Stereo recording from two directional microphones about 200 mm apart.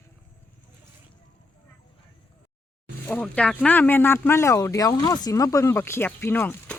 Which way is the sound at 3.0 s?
5° left (ahead or behind).